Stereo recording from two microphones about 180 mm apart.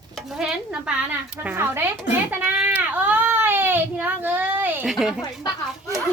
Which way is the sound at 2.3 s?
10° right (ahead or behind).